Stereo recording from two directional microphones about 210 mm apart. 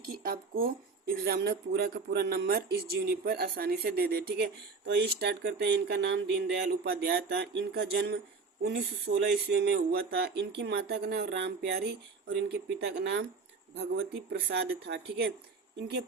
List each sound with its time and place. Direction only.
0.1 s speech: 45° right (ahead or behind)